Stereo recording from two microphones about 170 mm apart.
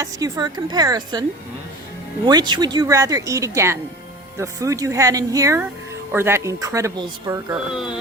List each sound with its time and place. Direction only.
0.0 s speech: 25° right (ahead or behind)
2.2 s speech: 25° right (ahead or behind)
7.7 s speech: 5° right (ahead or behind)